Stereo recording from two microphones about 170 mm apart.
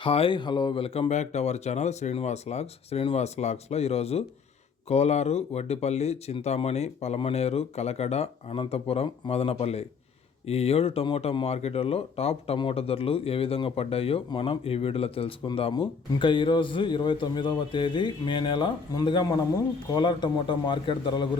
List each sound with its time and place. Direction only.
0.0 s a man's voice: 30° left (ahead or behind)